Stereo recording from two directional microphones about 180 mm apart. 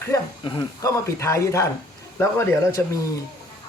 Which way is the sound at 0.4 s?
25° left (ahead or behind).